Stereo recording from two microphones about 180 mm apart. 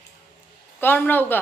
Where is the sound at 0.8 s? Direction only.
10° left (ahead or behind).